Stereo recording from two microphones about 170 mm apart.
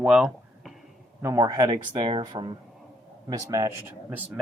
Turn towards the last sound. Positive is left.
turn(degrees=-10)  # may be behind; listen again after turning